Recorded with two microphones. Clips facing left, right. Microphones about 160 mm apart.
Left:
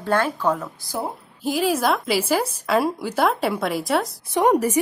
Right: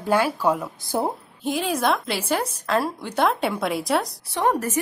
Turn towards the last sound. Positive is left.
turn(degrees=15)  # may be behind; listen again after turning